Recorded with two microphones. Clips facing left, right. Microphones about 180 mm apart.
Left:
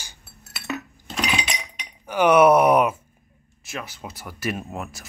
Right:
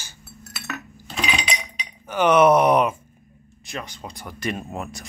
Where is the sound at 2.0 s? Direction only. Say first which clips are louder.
Left 1 dB; 10° left (ahead or behind).